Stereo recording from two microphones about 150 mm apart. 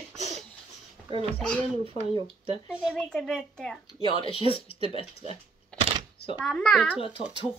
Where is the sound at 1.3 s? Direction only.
5° left (ahead or behind).